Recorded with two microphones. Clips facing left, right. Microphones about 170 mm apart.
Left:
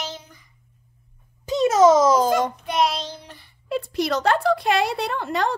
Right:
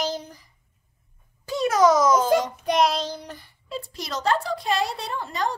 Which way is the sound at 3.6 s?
65° left (ahead or behind).